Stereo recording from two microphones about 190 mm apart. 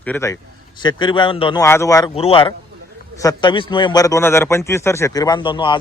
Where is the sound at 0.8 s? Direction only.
25° left (ahead or behind).